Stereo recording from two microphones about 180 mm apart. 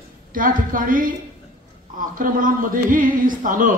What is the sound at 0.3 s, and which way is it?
Speech, 50° right (ahead or behind).